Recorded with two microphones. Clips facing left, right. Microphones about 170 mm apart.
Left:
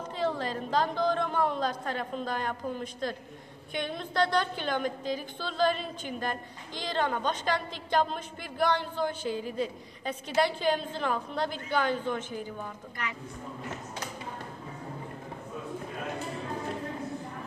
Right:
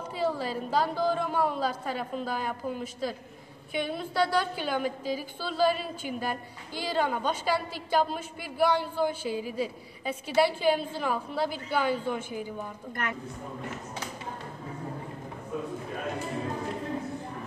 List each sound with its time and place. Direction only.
0.2 s a woman's voice: 10° right (ahead or behind)
13.0 s a woman's voice: 50° right (ahead or behind)